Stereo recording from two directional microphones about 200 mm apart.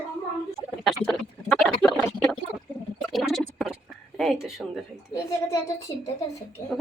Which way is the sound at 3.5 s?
Centre (ahead or behind).